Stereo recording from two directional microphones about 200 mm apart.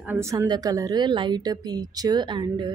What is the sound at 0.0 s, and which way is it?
Speech, 10° right (ahead or behind).